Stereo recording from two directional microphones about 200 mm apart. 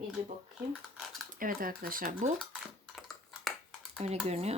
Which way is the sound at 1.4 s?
45° right (ahead or behind).